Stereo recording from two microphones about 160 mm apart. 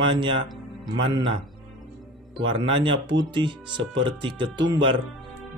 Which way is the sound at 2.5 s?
30° right (ahead or behind).